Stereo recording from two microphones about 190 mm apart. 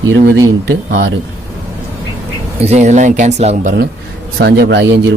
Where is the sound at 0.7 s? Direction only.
65° right (ahead or behind).